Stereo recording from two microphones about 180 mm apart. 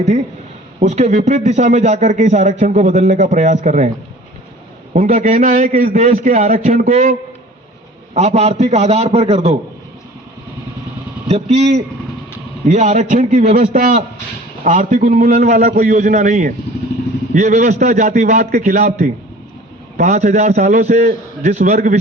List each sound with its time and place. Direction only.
0.8 s a man's voice: 40° right (ahead or behind)
4.9 s a man's voice: 45° right (ahead or behind)
11.3 s a man's voice: 35° right (ahead or behind)